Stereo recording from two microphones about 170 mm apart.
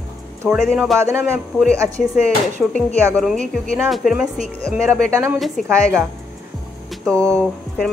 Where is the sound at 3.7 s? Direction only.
Centre (ahead or behind).